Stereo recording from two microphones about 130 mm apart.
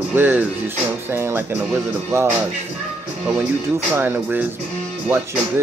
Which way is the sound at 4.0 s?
15° right (ahead or behind).